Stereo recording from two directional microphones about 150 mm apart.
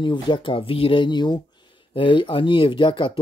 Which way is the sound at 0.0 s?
30° left (ahead or behind).